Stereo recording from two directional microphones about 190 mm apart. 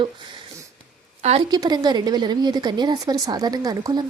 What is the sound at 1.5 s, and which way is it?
A woman's voice, 20° right (ahead or behind).